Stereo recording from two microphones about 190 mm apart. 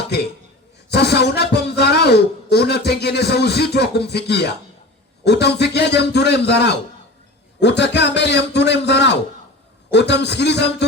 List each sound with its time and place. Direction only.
0.9 s a man's voice: 60° left (ahead or behind)